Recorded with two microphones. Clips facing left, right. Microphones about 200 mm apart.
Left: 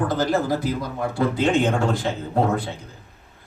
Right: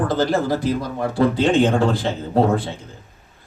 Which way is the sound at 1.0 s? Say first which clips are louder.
Right 3 dB; 30° right (ahead or behind).